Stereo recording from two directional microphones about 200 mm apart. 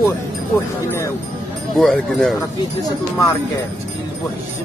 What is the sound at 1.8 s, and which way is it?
Speech, centre (ahead or behind).